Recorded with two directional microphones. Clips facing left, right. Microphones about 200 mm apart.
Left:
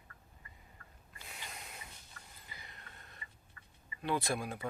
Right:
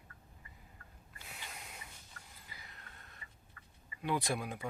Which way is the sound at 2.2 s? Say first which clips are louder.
Even; 45° right (ahead or behind).